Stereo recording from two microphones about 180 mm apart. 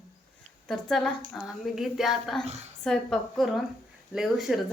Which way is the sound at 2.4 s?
40° right (ahead or behind).